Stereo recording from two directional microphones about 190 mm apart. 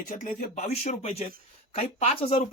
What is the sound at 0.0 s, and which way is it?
Speech, 45° left (ahead or behind).